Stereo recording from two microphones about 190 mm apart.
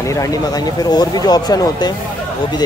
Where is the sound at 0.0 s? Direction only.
15° left (ahead or behind).